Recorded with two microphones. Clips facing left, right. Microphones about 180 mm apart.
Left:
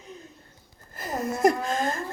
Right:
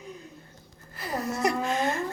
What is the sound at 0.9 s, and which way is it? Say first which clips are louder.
Speech: left 1 dB; 45° left (ahead or behind).